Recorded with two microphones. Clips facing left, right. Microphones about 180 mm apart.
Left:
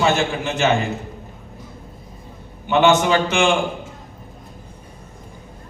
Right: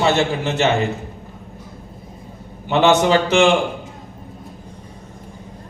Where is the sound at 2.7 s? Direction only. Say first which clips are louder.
Right 1 dB; 35° right (ahead or behind).